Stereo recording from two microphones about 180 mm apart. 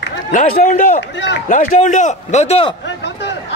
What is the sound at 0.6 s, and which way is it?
Speech, 45° left (ahead or behind).